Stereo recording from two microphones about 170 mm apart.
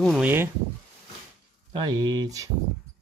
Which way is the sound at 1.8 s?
25° right (ahead or behind).